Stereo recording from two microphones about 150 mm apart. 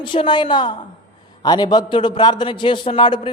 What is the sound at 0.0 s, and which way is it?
A man's voice, 35° left (ahead or behind).